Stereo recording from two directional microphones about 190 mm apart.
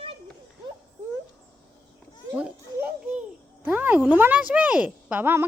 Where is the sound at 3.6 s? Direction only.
10° right (ahead or behind).